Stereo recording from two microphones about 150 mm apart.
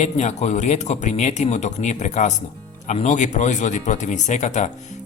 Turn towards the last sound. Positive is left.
turn(degrees=50)  # may be behind; listen again after turning